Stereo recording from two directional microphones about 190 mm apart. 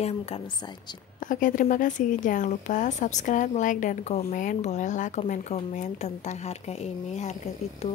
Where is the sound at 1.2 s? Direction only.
45° left (ahead or behind).